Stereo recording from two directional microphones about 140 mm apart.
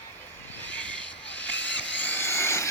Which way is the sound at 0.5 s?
10° left (ahead or behind).